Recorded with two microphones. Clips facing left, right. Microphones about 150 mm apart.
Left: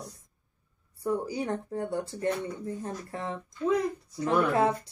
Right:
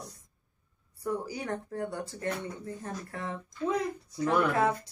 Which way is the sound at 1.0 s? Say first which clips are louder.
Left 4 dB; 25° left (ahead or behind).